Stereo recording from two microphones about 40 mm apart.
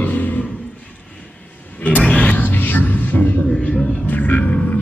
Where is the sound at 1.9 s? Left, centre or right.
Left.